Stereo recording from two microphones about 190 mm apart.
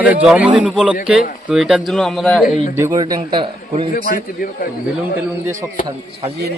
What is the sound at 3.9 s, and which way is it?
Speech, 45° left (ahead or behind).